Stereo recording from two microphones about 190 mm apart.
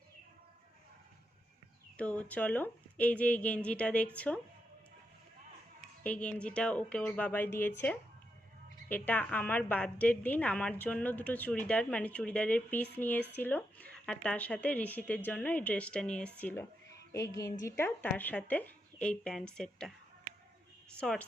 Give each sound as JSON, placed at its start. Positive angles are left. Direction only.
{"t": 2.0, "sound": "a woman's voice", "side_deg": 5}
{"t": 6.1, "sound": "a woman's voice", "side_deg": 5}
{"t": 8.9, "sound": "a woman's voice", "side_deg": 10}
{"t": 20.9, "sound": "a woman's voice", "side_deg": 5}